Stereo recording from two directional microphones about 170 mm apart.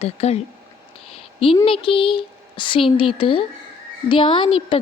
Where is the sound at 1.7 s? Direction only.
30° left (ahead or behind).